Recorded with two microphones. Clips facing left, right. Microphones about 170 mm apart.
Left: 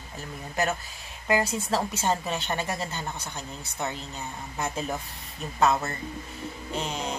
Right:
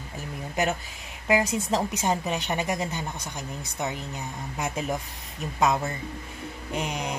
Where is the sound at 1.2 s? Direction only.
15° right (ahead or behind).